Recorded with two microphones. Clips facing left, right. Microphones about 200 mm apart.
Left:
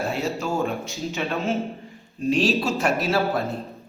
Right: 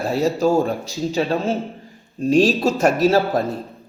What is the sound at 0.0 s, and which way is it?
A man's voice, 35° right (ahead or behind).